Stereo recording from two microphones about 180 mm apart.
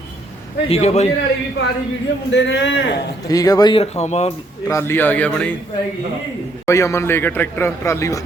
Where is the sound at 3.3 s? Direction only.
20° left (ahead or behind); by 4.3 s 40° left (ahead or behind).